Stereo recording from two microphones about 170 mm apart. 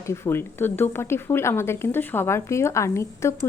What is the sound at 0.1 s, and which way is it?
A woman's voice, 15° left (ahead or behind).